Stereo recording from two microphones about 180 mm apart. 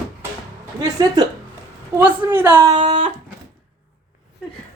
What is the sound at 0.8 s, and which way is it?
Speech, 25° right (ahead or behind).